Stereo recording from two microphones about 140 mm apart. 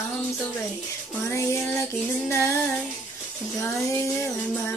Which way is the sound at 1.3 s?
20° left (ahead or behind).